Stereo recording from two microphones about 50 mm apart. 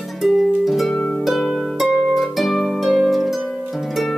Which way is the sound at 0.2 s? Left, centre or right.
Centre.